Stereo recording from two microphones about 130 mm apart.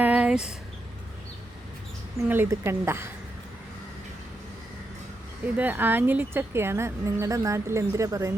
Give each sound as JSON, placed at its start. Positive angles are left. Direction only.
{"t": 0.0, "sound": "a sound", "side_deg": -10}
{"t": 2.3, "sound": "speech", "side_deg": -15}
{"t": 5.5, "sound": "speech", "side_deg": -15}